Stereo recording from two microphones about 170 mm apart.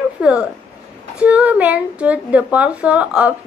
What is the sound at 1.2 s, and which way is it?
A woman's voice, 10° right (ahead or behind).